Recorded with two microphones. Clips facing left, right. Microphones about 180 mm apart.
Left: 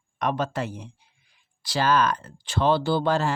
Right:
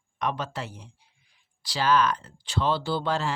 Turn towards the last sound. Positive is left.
turn(degrees=45)  # may be behind; listen again after turning